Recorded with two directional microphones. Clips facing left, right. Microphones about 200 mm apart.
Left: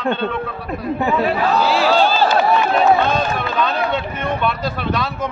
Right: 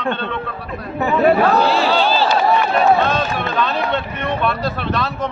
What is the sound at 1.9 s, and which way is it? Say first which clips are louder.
Speech: left 1 dB; 45° left (ahead or behind).